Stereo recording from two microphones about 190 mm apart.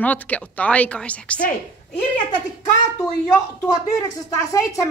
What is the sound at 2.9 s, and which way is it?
A woman's voice, 20° left (ahead or behind).